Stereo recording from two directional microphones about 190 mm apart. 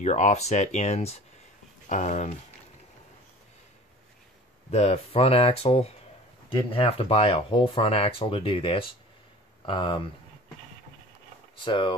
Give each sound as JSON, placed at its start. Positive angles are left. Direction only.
{"t": 0.0, "sound": "speech", "side_deg": 35}
{"t": 4.6, "sound": "speech", "side_deg": 35}
{"t": 11.6, "sound": "speech", "side_deg": 25}